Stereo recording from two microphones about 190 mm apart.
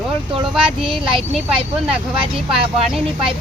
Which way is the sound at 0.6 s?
25° right (ahead or behind).